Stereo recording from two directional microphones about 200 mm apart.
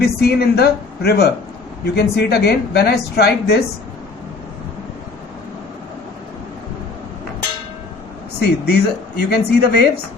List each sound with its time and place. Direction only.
0.0 s speech: 50° left (ahead or behind)
8.4 s speech: 55° left (ahead or behind)